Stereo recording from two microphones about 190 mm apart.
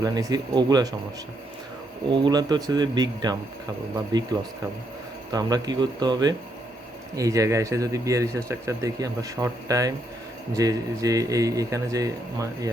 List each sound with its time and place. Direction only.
0.0 s speech: 20° right (ahead or behind)
2.0 s speech: 25° right (ahead or behind)
5.3 s a man's voice: 20° right (ahead or behind)